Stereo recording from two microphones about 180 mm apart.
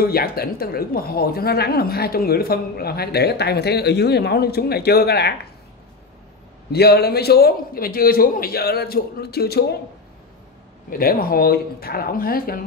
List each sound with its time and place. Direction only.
0.0 s speech: 55° left (ahead or behind)
6.7 s speech: 60° left (ahead or behind)
10.9 s speech: 55° left (ahead or behind)